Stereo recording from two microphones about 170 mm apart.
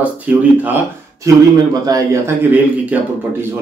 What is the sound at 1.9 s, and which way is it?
Speech, 20° right (ahead or behind).